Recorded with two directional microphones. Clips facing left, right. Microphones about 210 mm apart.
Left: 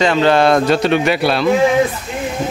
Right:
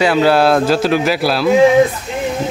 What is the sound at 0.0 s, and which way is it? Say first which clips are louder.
Speech: right 1 dB; 5° right (ahead or behind).